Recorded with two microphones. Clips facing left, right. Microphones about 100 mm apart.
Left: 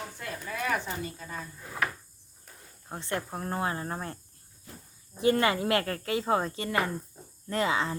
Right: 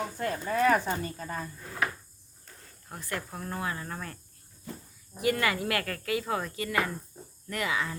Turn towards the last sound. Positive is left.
turn(degrees=30)  # may be behind; listen again after turning